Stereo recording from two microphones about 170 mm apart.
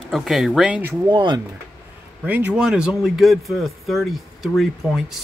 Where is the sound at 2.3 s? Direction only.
5° right (ahead or behind).